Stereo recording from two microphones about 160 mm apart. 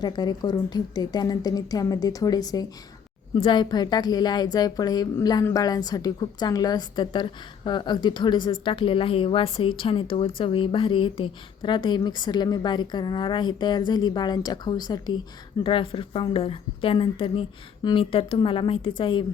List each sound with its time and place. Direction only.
0.0 s a woman's voice: 25° left (ahead or behind)